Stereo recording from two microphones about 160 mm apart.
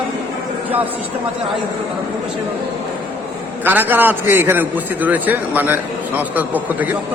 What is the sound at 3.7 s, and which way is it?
A man's voice, 10° right (ahead or behind).